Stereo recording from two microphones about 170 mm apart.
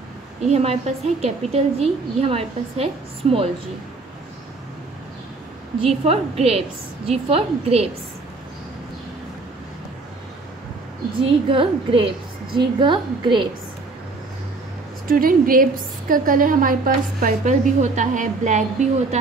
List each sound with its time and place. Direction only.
0.5 s a woman's voice: 40° right (ahead or behind)
5.8 s a woman's voice: 35° right (ahead or behind)
11.2 s a woman's voice: 30° right (ahead or behind)
15.0 s a woman's voice: 55° right (ahead or behind)